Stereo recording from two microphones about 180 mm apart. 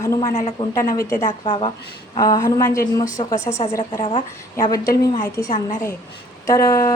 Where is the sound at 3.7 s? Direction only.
25° left (ahead or behind).